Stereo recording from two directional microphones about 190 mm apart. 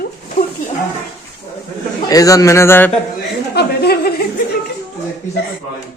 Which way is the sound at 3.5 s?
55° left (ahead or behind).